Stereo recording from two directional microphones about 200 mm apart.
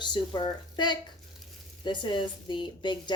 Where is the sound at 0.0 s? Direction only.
20° left (ahead or behind).